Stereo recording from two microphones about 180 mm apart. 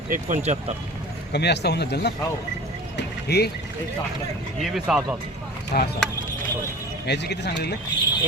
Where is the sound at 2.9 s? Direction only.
65° left (ahead or behind).